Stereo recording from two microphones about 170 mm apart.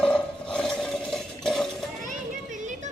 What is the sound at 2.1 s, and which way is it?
Children playing, 45° right (ahead or behind).